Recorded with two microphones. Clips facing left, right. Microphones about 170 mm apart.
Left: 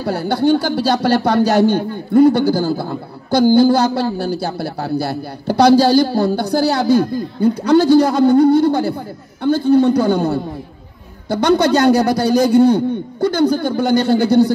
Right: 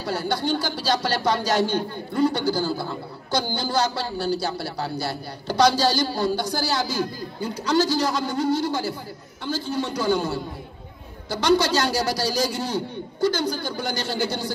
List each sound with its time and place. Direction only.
0.0 s speech: 60° left (ahead or behind)